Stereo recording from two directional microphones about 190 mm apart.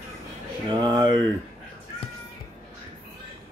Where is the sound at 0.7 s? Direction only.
25° right (ahead or behind).